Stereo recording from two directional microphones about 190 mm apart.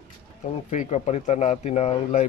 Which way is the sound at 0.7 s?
35° left (ahead or behind).